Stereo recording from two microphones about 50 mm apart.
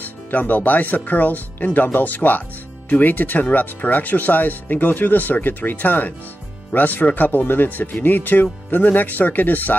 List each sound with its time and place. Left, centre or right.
0.0 s speech: left